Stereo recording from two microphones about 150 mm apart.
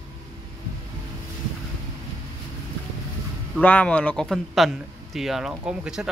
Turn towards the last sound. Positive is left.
turn(degrees=-5)  # may be behind; listen again after turning